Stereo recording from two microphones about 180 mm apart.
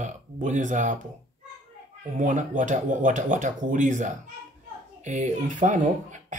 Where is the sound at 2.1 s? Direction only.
45° right (ahead or behind).